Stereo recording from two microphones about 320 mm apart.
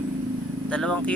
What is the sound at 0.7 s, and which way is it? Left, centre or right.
Speech, centre.